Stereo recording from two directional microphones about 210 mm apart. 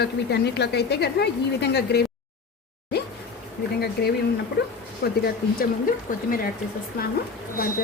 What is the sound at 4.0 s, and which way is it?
A woman's voice, 50° left (ahead or behind).